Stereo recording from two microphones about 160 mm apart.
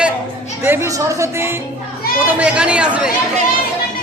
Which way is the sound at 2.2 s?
10° right (ahead or behind).